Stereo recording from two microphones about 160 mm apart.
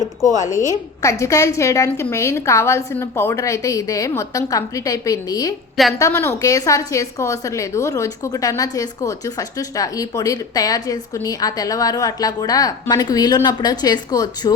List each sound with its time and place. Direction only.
0.3 s a woman's voice: 20° left (ahead or behind)